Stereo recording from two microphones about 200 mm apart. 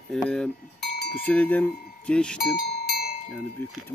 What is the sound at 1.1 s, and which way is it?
Cowbell, 5° left (ahead or behind).